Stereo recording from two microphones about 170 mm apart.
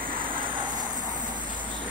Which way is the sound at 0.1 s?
30° right (ahead or behind).